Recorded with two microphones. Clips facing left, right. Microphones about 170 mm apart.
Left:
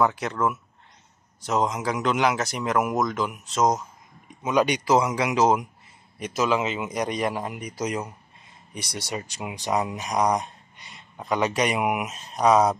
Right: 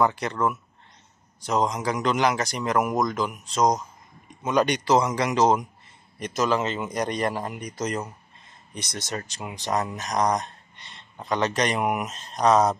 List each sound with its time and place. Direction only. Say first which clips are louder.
0.0 s speech: even; centre (ahead or behind)